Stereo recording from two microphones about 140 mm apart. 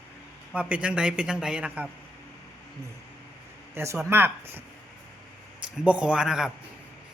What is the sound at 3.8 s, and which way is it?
Speech, 15° right (ahead or behind).